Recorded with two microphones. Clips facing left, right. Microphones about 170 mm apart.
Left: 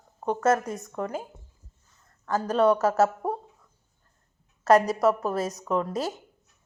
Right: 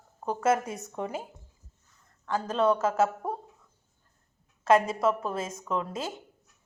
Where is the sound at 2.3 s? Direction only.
40° left (ahead or behind).